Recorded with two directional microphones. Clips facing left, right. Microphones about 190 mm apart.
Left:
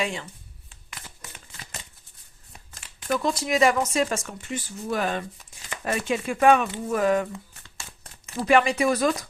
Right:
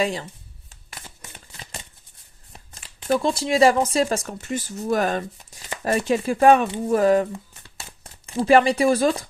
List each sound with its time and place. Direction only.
0.0 s speech: 35° right (ahead or behind)
3.0 s speech: 30° right (ahead or behind)